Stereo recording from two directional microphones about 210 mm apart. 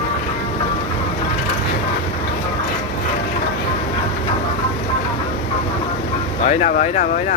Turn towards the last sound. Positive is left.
turn(degrees=35)  # may be behind; listen again after turning